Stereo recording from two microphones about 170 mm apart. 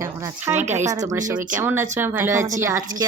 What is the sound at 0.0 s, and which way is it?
A woman's voice, 15° right (ahead or behind).